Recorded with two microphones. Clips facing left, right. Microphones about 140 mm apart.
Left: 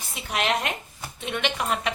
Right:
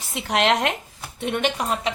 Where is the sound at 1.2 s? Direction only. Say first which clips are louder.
Right 4 dB; 50° right (ahead or behind).